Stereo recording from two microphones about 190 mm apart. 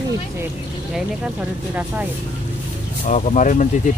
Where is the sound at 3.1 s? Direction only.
40° left (ahead or behind).